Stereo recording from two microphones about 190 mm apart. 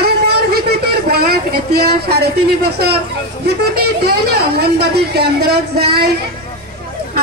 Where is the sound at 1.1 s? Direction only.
55° right (ahead or behind).